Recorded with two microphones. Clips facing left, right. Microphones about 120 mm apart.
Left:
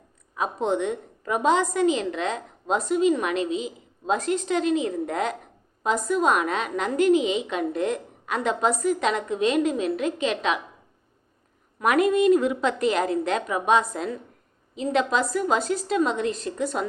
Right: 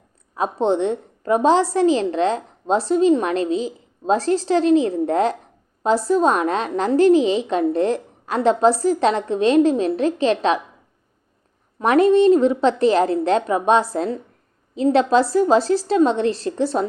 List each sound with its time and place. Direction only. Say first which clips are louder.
0.3 s a woman's voice: right 5 dB; 30° right (ahead or behind)
11.8 s a woman's voice: right 6 dB; 30° right (ahead or behind)